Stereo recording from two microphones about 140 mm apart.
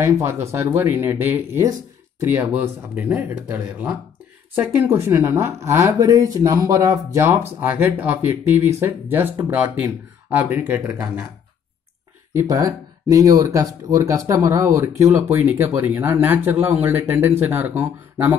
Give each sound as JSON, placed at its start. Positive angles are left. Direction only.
{"t": 0.0, "sound": "speech", "side_deg": -20}
{"t": 12.4, "sound": "speech", "side_deg": -25}